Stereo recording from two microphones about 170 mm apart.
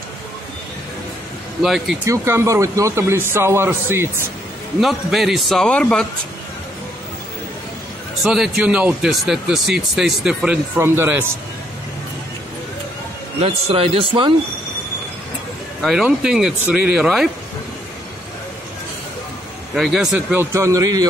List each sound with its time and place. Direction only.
1.6 s speech: centre (ahead or behind)
2.0 s speech: 15° right (ahead or behind)
4.7 s speech: centre (ahead or behind)
8.2 s speech: 5° right (ahead or behind)
13.4 s speech: 35° right (ahead or behind)
15.8 s speech: 5° right (ahead or behind)
19.7 s speech: centre (ahead or behind)
20.5 s a man's voice: 20° right (ahead or behind)